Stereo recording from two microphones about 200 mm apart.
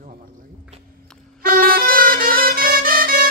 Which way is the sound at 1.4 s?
45° right (ahead or behind).